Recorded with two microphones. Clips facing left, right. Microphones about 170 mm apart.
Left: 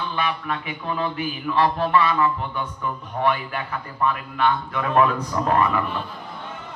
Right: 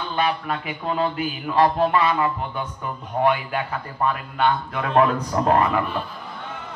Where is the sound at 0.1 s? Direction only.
35° right (ahead or behind).